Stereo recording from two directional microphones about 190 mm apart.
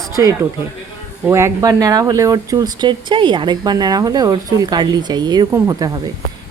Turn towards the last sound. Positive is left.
turn(degrees=-20)  # may be behind; listen again after turning